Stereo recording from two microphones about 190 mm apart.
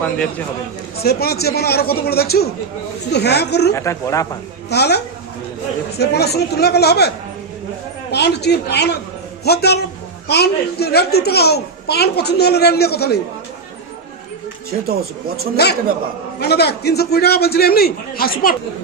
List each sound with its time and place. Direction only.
0.0 s speech: 10° left (ahead or behind)
0.9 s a child's voice: 55° left (ahead or behind)
3.7 s speech: 15° left (ahead or behind)
4.7 s a child's voice: 60° left (ahead or behind)
8.1 s a child's voice: 60° left (ahead or behind)
15.6 s a child's voice: 60° left (ahead or behind)